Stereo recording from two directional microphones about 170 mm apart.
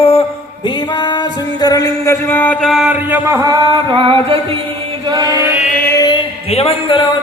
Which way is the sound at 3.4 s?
30° right (ahead or behind).